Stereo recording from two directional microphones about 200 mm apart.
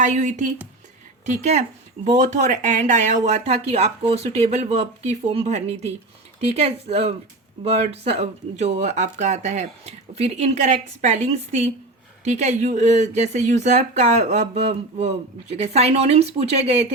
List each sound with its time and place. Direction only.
0.0 s speech: 35° right (ahead or behind)